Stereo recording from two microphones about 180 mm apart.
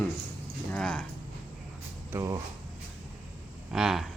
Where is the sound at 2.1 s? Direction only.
20° right (ahead or behind).